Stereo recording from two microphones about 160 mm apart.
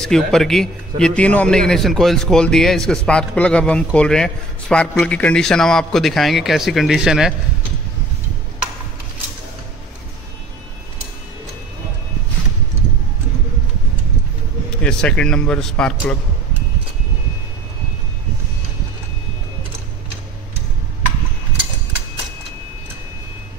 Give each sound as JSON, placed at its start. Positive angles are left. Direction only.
{"t": 0.0, "sound": "a man's voice", "side_deg": 5}
{"t": 14.8, "sound": "a man's voice", "side_deg": 5}